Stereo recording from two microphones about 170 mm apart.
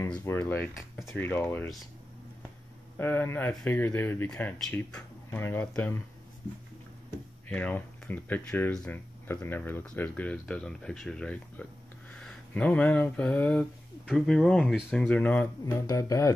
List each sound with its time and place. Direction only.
0.1 s speech: 15° left (ahead or behind)
3.0 s speech: 10° left (ahead or behind)
7.4 s speech: 10° left (ahead or behind)
15.6 s speech: 20° left (ahead or behind)